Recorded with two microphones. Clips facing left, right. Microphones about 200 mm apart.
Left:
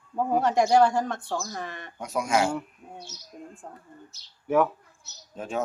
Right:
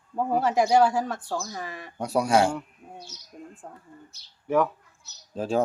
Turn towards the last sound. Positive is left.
turn(degrees=-30)  # may be behind; listen again after turning